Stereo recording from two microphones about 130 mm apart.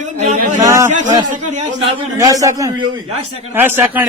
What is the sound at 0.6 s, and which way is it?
Speech, 20° right (ahead or behind).